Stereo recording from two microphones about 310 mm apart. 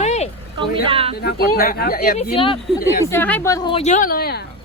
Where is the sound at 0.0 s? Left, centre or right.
Left.